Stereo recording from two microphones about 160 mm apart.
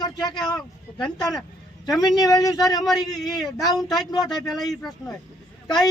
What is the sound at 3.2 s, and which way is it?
Speech, centre (ahead or behind).